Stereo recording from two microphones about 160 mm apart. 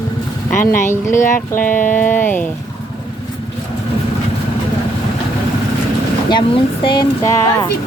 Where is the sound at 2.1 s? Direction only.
15° left (ahead or behind).